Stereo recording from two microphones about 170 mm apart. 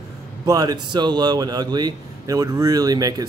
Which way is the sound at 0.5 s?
25° right (ahead or behind).